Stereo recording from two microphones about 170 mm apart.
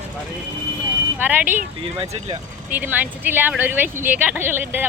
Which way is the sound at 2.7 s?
10° right (ahead or behind).